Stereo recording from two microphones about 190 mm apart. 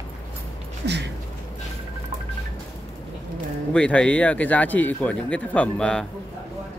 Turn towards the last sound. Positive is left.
turn(degrees=5)  # may be behind; listen again after turning